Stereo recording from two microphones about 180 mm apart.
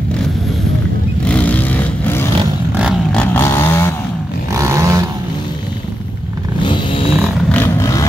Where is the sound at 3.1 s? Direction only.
10° left (ahead or behind).